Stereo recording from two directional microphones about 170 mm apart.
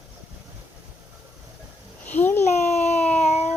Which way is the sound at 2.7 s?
40° left (ahead or behind).